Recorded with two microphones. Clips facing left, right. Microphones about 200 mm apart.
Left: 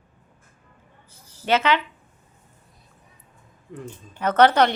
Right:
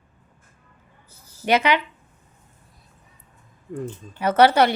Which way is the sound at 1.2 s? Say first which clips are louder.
Right 1 dB; 10° right (ahead or behind).